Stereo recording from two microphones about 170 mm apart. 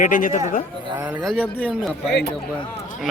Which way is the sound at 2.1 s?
75° left (ahead or behind).